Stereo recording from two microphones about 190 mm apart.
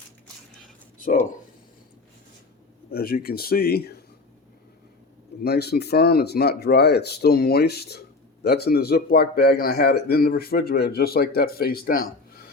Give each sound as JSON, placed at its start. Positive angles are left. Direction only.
{"t": 2.9, "sound": "a man's voice", "side_deg": 50}
{"t": 5.4, "sound": "a man's voice", "side_deg": 55}